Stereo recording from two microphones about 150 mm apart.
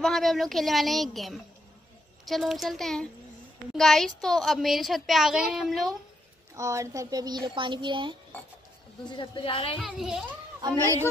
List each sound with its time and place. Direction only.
0.0 s a child's voice: centre (ahead or behind)
6.5 s a woman's voice: 20° right (ahead or behind)
9.0 s a woman's voice: 30° left (ahead or behind)
9.8 s a child's voice: centre (ahead or behind)